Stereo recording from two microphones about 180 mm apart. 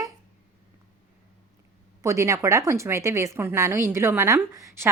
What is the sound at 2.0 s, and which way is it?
A woman's voice, 15° right (ahead or behind).